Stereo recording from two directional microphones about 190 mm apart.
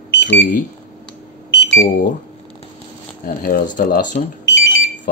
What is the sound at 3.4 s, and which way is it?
Speech, 50° left (ahead or behind).